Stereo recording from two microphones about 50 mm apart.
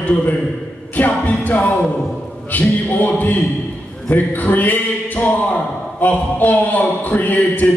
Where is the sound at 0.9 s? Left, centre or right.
Left.